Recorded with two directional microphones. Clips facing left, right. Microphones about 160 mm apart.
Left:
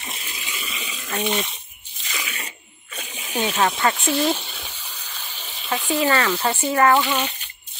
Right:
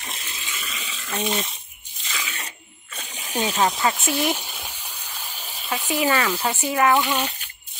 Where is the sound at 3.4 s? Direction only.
10° right (ahead or behind).